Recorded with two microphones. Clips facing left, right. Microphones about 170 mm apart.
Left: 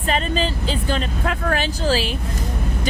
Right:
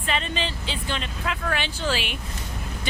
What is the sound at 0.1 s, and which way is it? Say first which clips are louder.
Speech: left 6 dB; 40° left (ahead or behind).